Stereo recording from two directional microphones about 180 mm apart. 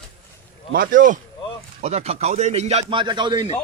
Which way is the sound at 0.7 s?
50° right (ahead or behind).